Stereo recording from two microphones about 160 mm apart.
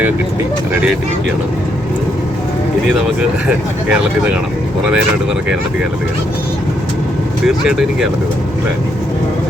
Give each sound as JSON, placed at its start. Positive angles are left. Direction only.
{"t": 0.7, "sound": "speech", "side_deg": -5}
{"t": 7.4, "sound": "speech", "side_deg": -5}